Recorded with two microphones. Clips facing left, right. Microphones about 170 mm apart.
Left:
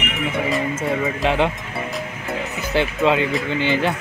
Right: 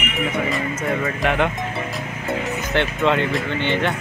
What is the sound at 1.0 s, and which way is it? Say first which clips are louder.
Speech: left 1 dB; 25° left (ahead or behind).